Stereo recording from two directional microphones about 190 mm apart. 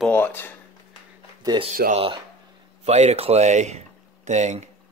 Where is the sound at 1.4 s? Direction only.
25° right (ahead or behind).